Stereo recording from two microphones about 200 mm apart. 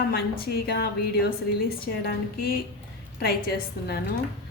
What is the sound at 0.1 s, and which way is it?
A woman's voice, 50° left (ahead or behind).